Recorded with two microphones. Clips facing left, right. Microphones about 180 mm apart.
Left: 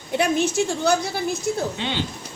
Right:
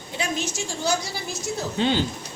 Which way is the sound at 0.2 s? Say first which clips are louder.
Left 8 dB; 60° left (ahead or behind).